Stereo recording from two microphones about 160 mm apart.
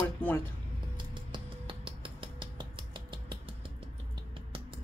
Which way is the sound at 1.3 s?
30° right (ahead or behind).